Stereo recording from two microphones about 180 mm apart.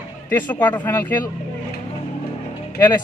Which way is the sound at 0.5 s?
10° left (ahead or behind).